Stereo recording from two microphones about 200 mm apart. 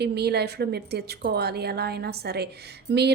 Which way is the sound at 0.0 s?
55° right (ahead or behind).